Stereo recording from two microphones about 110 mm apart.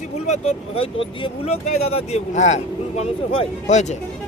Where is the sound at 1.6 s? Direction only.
70° left (ahead or behind); by 3.9 s 90° left.